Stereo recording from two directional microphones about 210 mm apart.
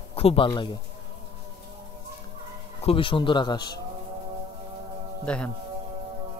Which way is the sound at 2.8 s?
25° left (ahead or behind).